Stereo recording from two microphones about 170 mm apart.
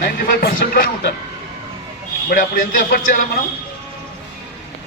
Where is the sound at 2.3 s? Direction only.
60° left (ahead or behind).